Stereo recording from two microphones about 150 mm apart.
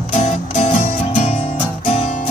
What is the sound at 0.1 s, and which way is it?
Music, 50° left (ahead or behind).